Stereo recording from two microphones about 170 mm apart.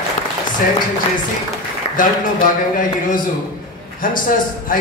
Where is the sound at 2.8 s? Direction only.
50° left (ahead or behind).